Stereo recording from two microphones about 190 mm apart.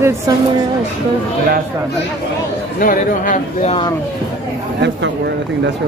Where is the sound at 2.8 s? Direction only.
45° left (ahead or behind).